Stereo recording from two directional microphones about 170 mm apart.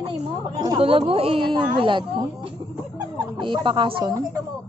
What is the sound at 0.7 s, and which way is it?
Speech, 30° right (ahead or behind).